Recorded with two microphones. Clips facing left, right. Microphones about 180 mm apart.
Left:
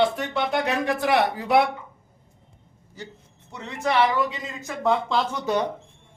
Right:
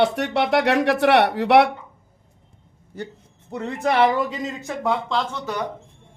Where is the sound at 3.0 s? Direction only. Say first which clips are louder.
Right 7 dB; 60° right (ahead or behind).